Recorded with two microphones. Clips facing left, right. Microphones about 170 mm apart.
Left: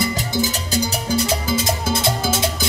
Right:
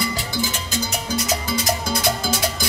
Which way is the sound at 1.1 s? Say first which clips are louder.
Left 4 dB; 30° left (ahead or behind).